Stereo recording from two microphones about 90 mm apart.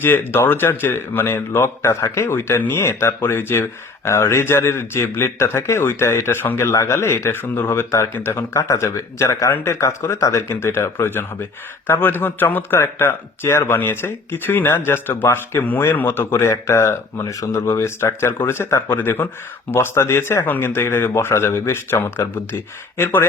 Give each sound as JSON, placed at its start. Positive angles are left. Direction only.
{"t": 0.0, "sound": "speech", "side_deg": 25}